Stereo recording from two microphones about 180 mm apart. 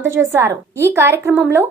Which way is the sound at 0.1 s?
15° right (ahead or behind).